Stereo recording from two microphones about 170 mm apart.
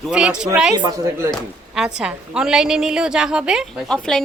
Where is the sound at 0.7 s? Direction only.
20° right (ahead or behind).